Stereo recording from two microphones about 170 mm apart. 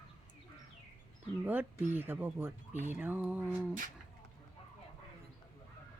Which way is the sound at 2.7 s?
45° right (ahead or behind).